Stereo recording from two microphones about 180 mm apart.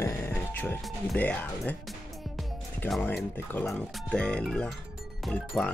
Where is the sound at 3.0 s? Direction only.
10° left (ahead or behind).